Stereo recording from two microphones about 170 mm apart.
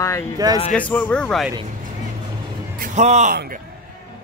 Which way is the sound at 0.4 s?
20° right (ahead or behind).